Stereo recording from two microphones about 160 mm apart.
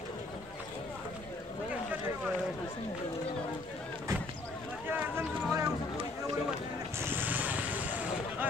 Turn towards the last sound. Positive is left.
turn(degrees=-10)  # may be behind; listen again after turning